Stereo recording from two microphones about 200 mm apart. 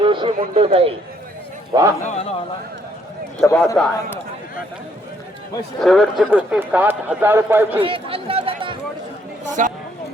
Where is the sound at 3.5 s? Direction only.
15° left (ahead or behind).